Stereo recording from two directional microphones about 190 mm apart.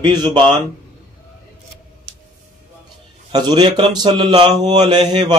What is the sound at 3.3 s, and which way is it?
Speech, 20° right (ahead or behind).